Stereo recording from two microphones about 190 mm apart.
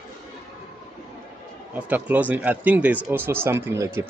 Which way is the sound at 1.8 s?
10° right (ahead or behind).